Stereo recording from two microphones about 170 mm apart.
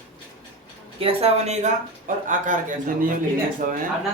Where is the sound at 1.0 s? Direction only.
35° right (ahead or behind); by 3.8 s 50° right (ahead or behind).